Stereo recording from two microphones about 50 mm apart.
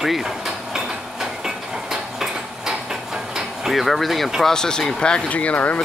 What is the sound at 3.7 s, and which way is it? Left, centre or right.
Speech, centre.